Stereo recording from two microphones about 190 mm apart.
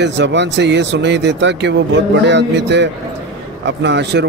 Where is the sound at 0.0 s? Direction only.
65° right (ahead or behind).